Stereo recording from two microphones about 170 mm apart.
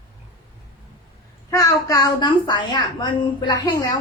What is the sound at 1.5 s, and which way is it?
A woman's voice, 20° left (ahead or behind).